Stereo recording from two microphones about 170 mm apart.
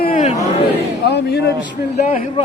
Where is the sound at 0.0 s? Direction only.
50° left (ahead or behind).